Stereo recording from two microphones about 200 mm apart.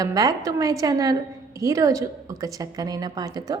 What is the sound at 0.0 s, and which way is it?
A woman's voice, 20° right (ahead or behind).